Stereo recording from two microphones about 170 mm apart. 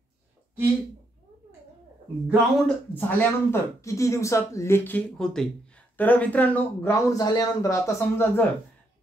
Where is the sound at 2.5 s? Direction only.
10° left (ahead or behind).